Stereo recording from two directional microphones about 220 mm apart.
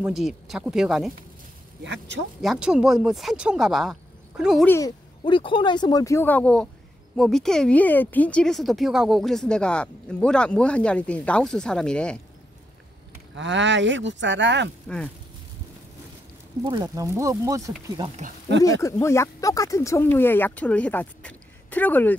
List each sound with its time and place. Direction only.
0.0 s speech: 5° right (ahead or behind)
1.8 s speech: 55° right (ahead or behind)
2.4 s speech: 5° right (ahead or behind)
4.6 s speech: 15° left (ahead or behind)
13.3 s speech: 55° right (ahead or behind)
16.6 s speech: 20° right (ahead or behind)
18.6 s speech: 15° left (ahead or behind)